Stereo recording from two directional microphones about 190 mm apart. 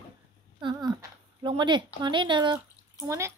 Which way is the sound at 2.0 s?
25° right (ahead or behind).